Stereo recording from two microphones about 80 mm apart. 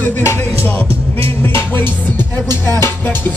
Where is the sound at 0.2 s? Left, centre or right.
Left.